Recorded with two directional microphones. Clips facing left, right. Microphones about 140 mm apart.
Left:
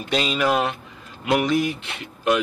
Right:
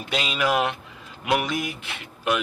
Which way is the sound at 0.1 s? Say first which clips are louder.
Left 3 dB; 5° right (ahead or behind).